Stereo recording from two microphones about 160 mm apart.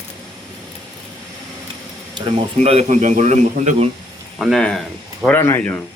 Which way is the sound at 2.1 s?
35° right (ahead or behind).